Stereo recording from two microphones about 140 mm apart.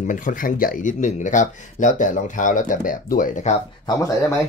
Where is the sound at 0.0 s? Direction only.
65° left (ahead or behind).